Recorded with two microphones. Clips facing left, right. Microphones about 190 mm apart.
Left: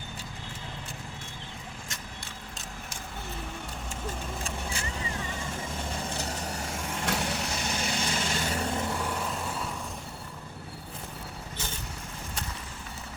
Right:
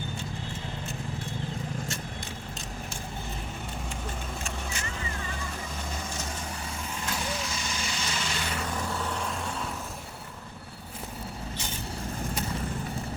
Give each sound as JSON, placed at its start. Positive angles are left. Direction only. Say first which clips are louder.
{"t": 4.4, "sound": "vehicle", "louder": "left 1 dB", "side_deg": 30}
{"t": 6.9, "sound": "vehicle", "louder": "left 3 dB", "side_deg": 65}
{"t": 9.0, "sound": "vehicle", "louder": "even", "side_deg": 5}